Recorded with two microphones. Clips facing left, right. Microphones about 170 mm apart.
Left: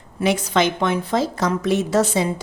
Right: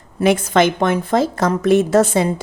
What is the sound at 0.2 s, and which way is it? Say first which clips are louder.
A woman's voice: right 5 dB; 50° right (ahead or behind).